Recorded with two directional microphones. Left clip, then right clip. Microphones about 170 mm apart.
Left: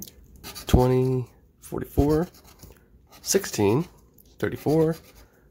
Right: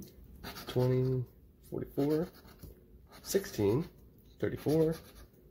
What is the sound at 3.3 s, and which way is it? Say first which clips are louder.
Speech: left 9 dB; 35° left (ahead or behind).